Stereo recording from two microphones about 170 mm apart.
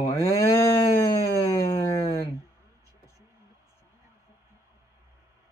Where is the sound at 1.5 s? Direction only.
20° left (ahead or behind).